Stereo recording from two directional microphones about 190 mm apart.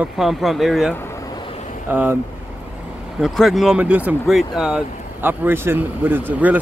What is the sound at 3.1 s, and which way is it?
Speech, centre (ahead or behind).